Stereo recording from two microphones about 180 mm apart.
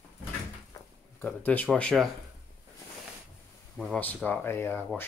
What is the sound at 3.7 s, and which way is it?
Speech, centre (ahead or behind).